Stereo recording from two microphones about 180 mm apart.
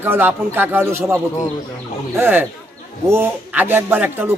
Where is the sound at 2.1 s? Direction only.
10° right (ahead or behind).